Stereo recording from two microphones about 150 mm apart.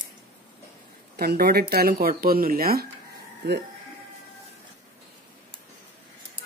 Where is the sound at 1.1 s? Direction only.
90° right.